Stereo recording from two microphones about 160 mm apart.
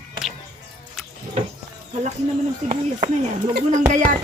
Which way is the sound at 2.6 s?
45° right (ahead or behind).